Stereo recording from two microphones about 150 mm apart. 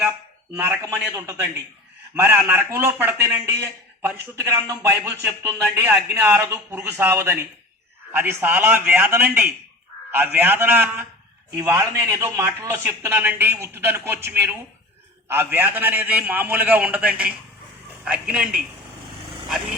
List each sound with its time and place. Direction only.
0.5 s a man's voice: 15° right (ahead or behind)